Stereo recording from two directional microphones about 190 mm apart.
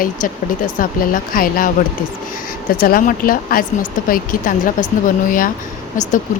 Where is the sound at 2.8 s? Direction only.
50° left (ahead or behind).